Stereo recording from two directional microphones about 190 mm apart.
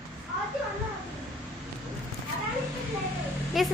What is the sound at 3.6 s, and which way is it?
Speech, centre (ahead or behind).